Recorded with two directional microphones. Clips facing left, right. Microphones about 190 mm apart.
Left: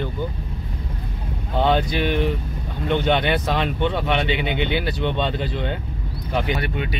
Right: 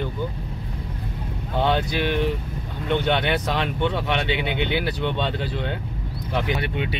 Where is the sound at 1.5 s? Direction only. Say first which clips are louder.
Left 2 dB; 15° left (ahead or behind).